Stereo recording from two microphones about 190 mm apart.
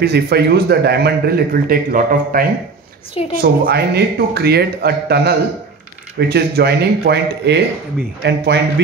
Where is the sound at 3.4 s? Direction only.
60° right (ahead or behind).